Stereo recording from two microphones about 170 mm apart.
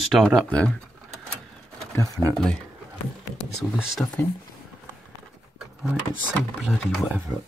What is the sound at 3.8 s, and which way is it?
Speech, 5° right (ahead or behind).